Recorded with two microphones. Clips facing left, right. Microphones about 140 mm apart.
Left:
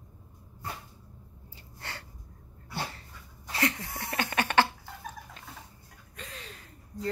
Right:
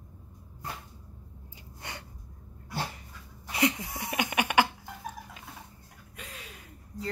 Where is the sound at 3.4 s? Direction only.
20° right (ahead or behind).